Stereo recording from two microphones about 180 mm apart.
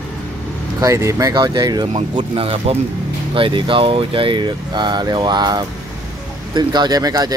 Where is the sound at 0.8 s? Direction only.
15° right (ahead or behind).